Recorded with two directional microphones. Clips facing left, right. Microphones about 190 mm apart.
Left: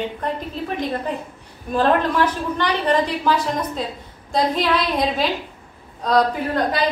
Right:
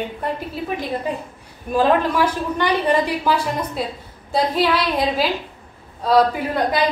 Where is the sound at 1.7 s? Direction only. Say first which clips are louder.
Right 1 dB; 10° right (ahead or behind).